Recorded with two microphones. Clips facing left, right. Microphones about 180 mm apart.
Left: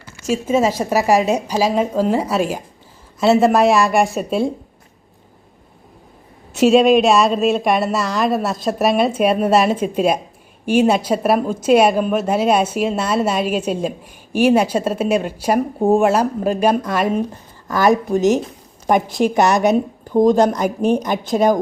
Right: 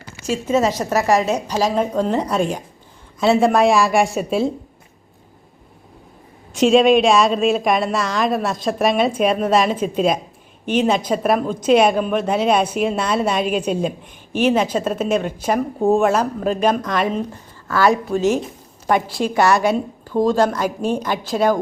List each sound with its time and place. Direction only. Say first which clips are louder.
0.4 s a woman's voice: left 1 dB; 10° left (ahead or behind)
6.6 s a woman's voice: left 1 dB; 5° left (ahead or behind)